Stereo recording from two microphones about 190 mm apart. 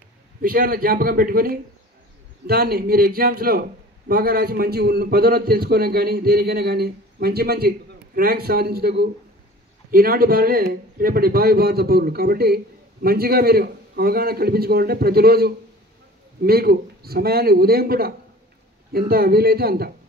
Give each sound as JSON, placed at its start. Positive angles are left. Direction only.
{"t": 0.4, "sound": "a man's voice", "side_deg": -50}